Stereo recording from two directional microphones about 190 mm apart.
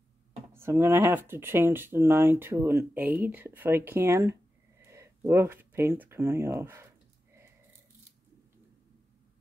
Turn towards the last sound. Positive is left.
turn(degrees=-15)  # may be behind; listen again after turning